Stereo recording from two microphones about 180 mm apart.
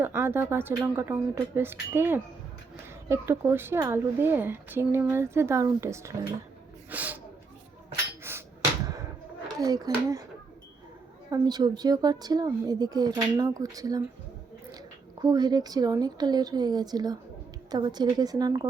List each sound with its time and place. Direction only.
0.0 s speech: 15° right (ahead or behind)
8.2 s hammer: 15° right (ahead or behind)
9.6 s speech: 20° right (ahead or behind)
11.3 s speech: 20° right (ahead or behind)
15.2 s speech: 20° right (ahead or behind)